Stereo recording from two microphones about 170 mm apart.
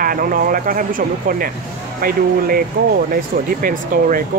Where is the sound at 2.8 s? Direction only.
65° right (ahead or behind).